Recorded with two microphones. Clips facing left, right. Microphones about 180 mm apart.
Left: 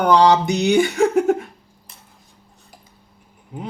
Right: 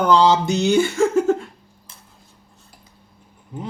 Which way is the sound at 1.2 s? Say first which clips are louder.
Left 1 dB; 15° left (ahead or behind).